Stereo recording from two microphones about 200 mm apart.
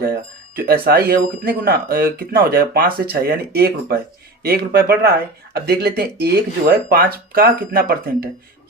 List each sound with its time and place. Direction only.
0.0 s speech: 50° right (ahead or behind)